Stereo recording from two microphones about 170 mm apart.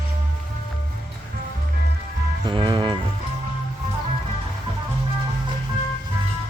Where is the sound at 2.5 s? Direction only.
30° right (ahead or behind).